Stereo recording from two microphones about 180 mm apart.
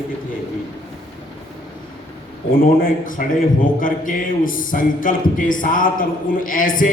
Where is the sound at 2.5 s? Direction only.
50° left (ahead or behind).